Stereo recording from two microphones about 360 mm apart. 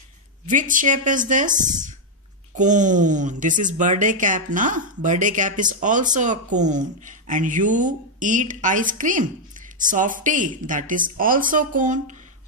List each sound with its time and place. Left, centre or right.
0.5 s speech: right